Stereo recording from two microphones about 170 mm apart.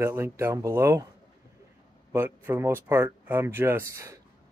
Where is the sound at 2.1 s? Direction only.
15° right (ahead or behind).